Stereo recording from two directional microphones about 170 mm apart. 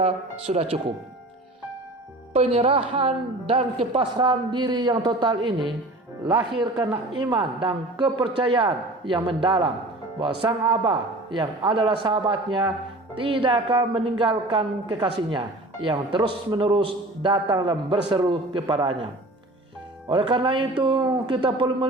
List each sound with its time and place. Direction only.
0.0 s a woman's voice: 35° right (ahead or behind)
2.3 s a woman's voice: 40° right (ahead or behind)
7.2 s a woman's voice: 25° right (ahead or behind)
20.1 s a woman's voice: 30° right (ahead or behind)